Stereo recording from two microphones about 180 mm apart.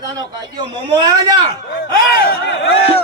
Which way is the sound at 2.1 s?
60° left (ahead or behind).